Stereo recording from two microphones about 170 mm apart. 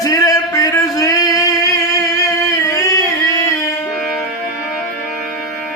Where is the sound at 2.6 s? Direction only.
20° left (ahead or behind).